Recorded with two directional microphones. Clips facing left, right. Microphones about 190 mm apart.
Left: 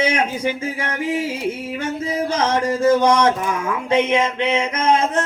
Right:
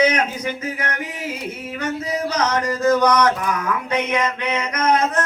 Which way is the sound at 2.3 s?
25° left (ahead or behind).